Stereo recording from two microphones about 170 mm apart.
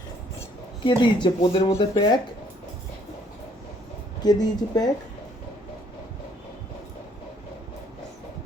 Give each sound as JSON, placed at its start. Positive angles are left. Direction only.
{"t": 0.9, "sound": "speech", "side_deg": 25}
{"t": 4.2, "sound": "speech", "side_deg": 25}